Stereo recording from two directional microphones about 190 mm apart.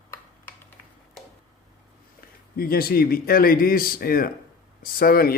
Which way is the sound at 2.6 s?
50° left (ahead or behind).